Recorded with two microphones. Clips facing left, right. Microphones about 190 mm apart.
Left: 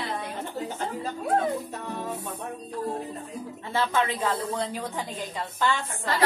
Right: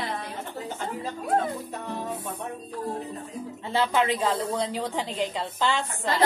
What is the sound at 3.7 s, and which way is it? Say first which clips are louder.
Speech: right 2 dB; 20° right (ahead or behind).